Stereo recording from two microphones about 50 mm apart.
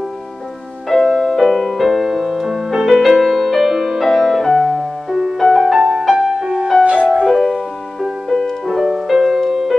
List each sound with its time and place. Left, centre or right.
0.8 s music: centre
6.8 s music: right
7.2 s music: centre